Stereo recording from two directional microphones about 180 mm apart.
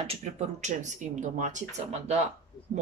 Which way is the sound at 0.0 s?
35° right (ahead or behind).